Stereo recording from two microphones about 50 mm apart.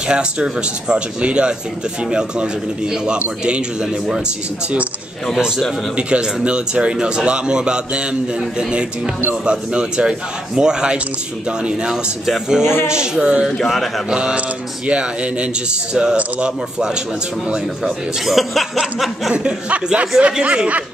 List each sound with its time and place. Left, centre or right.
0.1 s speech: centre
5.3 s speech: centre
5.9 s a man's voice: right
13.7 s speech: centre
14.1 s speech: right
17.5 s speech: centre
19.3 s speech: right